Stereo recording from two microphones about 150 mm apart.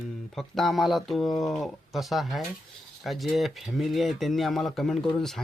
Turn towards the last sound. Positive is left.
turn(degrees=0)  # may be behind; listen again after turning